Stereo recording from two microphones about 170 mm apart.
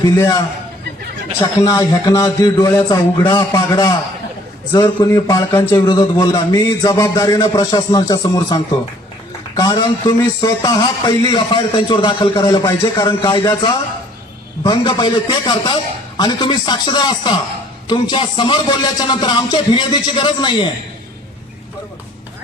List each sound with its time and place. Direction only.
0.2 s speech: 20° left (ahead or behind)
14.6 s speech: 25° left (ahead or behind)